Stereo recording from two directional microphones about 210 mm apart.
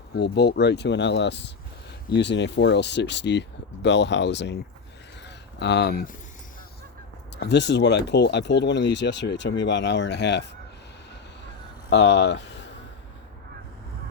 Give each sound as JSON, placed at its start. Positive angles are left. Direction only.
{"t": 0.2, "sound": "speech", "side_deg": 50}
{"t": 7.3, "sound": "speech", "side_deg": 55}
{"t": 11.9, "sound": "speech", "side_deg": 55}